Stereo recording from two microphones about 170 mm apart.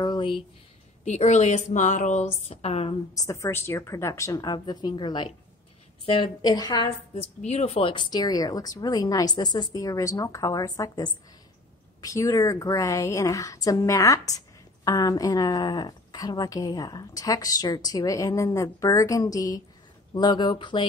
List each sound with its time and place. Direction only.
0.0 s a sound: 25° left (ahead or behind)
1.0 s a woman's voice: 45° left (ahead or behind)
2.4 s a woman's voice: 35° left (ahead or behind)
3.2 s a woman's voice: 15° left (ahead or behind)
7.2 s a woman's voice: 40° left (ahead or behind)